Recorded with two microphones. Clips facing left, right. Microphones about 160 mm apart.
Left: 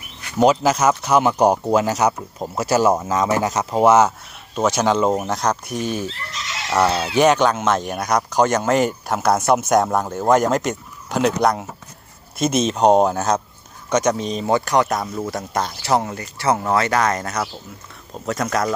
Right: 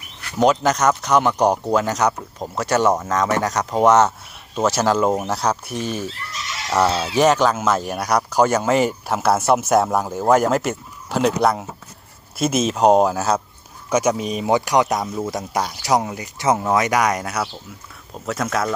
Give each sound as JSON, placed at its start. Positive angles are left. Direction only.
{"t": 0.3, "sound": "speech", "side_deg": 5}
{"t": 15.0, "sound": "speech", "side_deg": -5}
{"t": 15.3, "sound": "speech", "side_deg": -15}